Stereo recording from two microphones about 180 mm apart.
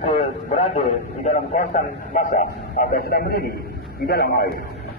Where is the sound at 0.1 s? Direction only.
35° left (ahead or behind); by 4.5 s 60° left (ahead or behind).